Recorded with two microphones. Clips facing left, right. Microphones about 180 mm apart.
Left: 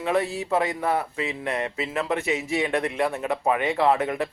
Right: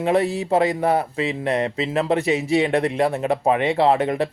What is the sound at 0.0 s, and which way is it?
Speech, 30° right (ahead or behind).